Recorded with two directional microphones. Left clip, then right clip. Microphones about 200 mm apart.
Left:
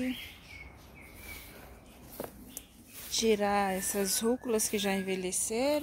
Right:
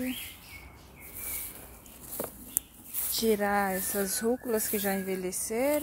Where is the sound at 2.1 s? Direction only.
60° right (ahead or behind).